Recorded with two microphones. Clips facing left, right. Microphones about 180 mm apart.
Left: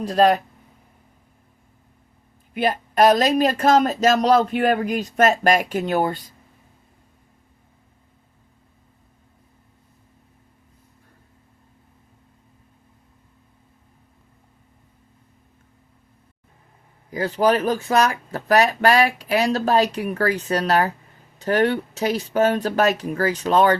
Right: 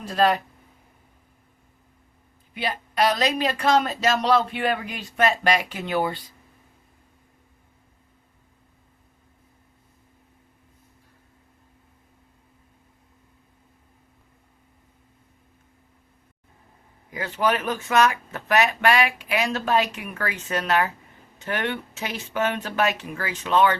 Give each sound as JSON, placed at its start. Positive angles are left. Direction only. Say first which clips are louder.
{"t": 0.0, "sound": "speech", "louder": "left 4 dB", "side_deg": 40}
{"t": 2.5, "sound": "speech", "louder": "left 7 dB", "side_deg": 50}
{"t": 17.1, "sound": "speech", "louder": "left 5 dB", "side_deg": 35}